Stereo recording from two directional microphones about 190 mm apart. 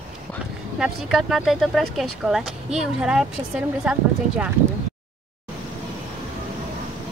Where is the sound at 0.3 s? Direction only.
5° left (ahead or behind).